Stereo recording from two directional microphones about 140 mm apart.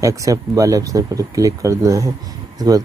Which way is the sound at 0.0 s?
25° right (ahead or behind).